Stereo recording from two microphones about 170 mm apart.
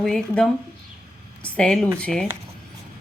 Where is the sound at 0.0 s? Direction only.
5° left (ahead or behind).